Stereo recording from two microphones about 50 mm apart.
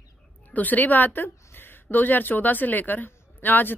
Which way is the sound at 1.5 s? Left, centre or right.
Left.